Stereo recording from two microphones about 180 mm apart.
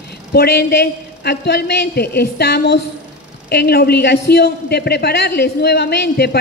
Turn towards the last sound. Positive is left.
turn(degrees=65)  # may be behind; listen again after turning